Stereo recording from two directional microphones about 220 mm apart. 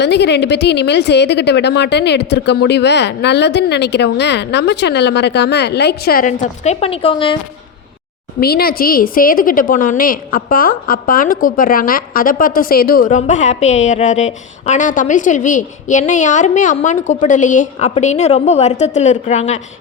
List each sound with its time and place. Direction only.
0.0 s speech: 50° left (ahead or behind); by 7.3 s 25° left (ahead or behind)
8.4 s a woman's voice: 45° left (ahead or behind)